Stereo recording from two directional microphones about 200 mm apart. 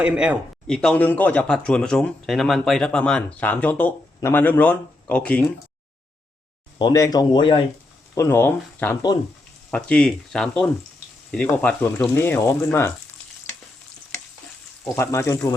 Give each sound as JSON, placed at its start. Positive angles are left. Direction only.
{"t": 0.0, "sound": "speech", "side_deg": -5}
{"t": 0.8, "sound": "a man's voice", "side_deg": 5}
{"t": 6.7, "sound": "a man's voice", "side_deg": 20}
{"t": 14.8, "sound": "speech", "side_deg": 15}